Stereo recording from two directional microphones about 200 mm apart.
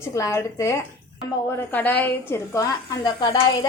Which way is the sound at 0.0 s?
15° left (ahead or behind).